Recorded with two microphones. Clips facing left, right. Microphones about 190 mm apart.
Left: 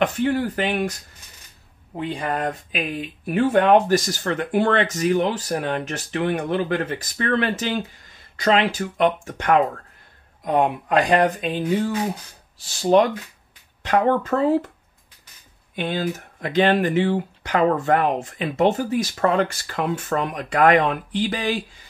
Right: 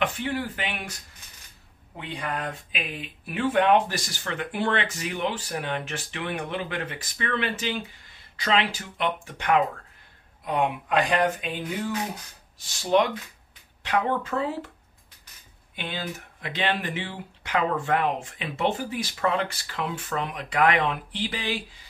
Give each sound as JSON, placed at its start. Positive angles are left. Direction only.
{"t": 0.0, "sound": "speech", "side_deg": 45}
{"t": 2.0, "sound": "speech", "side_deg": 40}
{"t": 15.7, "sound": "speech", "side_deg": 45}